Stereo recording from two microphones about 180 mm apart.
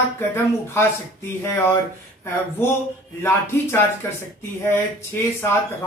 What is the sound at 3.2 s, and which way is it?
Speech, 15° left (ahead or behind).